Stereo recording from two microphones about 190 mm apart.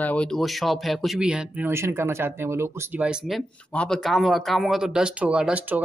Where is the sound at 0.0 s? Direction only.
5° left (ahead or behind).